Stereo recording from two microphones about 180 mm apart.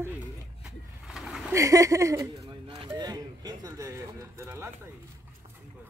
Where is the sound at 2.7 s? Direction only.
25° right (ahead or behind).